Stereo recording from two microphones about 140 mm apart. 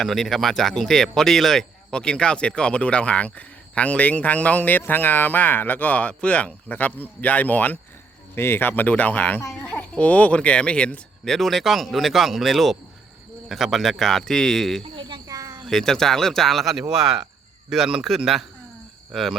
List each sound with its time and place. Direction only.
0.0 s speech: centre (ahead or behind)
14.9 s cricket: 30° right (ahead or behind)
15.6 s speech: 5° left (ahead or behind)